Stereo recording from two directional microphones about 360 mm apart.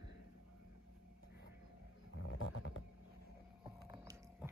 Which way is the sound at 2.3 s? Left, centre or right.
Left.